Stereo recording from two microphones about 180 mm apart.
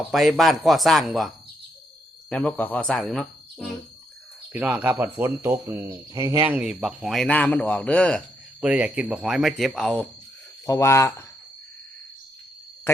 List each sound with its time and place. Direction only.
0.1 s speech: centre (ahead or behind)
2.3 s speech: 10° left (ahead or behind)
4.5 s speech: 10° right (ahead or behind)
6.5 s speech: 5° right (ahead or behind)
8.6 s speech: 5° right (ahead or behind)
10.7 s speech: 15° left (ahead or behind)